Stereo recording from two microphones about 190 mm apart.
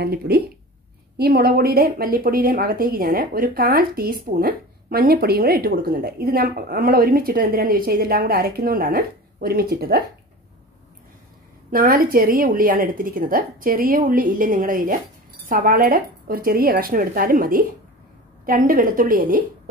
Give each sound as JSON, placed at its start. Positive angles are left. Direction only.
{"t": 0.0, "sound": "speech", "side_deg": -55}
{"t": 11.7, "sound": "speech", "side_deg": -50}